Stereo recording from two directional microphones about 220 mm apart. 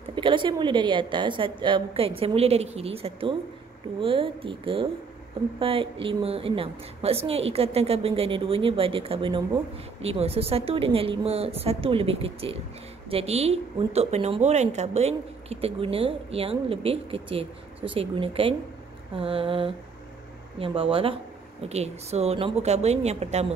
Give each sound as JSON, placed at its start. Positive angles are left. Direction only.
{"t": 0.1, "sound": "a woman's voice", "side_deg": -20}